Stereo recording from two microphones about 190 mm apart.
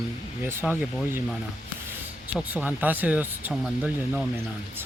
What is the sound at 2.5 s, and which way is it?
Speech, 10° right (ahead or behind).